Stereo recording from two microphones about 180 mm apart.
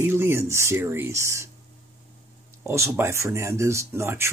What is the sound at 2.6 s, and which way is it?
Speech, 15° right (ahead or behind).